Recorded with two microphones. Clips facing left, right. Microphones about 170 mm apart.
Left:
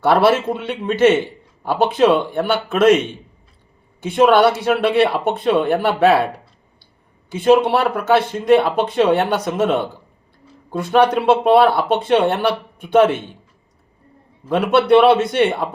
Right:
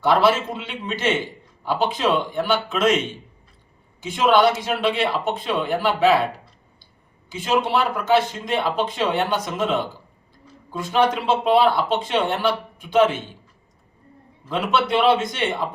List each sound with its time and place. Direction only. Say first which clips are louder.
0.0 s speech: left 4 dB; 65° left (ahead or behind)
4.0 s speech: left 4 dB; 60° left (ahead or behind)
7.3 s speech: left 8 dB; 60° left (ahead or behind)
14.4 s speech: left 6 dB; 60° left (ahead or behind)